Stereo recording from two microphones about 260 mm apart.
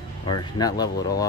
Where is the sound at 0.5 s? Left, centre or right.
Centre.